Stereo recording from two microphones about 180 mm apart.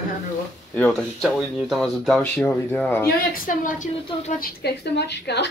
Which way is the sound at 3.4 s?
45° left (ahead or behind).